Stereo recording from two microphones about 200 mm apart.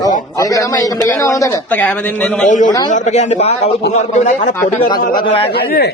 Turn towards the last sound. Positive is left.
turn(degrees=50)  # may be behind; listen again after turning